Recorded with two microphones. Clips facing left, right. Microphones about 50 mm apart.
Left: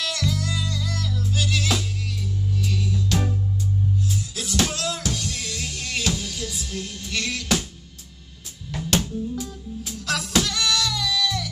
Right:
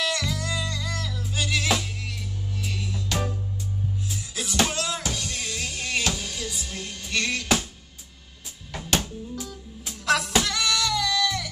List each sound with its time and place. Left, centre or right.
0.0 s music: centre
8.7 s music: centre